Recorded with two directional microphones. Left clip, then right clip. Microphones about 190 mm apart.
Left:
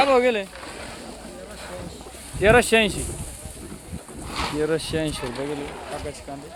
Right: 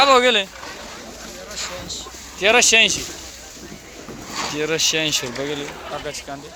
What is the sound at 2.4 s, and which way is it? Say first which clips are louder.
Speech: right 3 dB; 45° left (ahead or behind).